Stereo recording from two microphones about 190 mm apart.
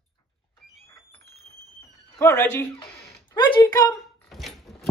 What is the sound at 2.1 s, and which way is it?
Speech, 10° left (ahead or behind).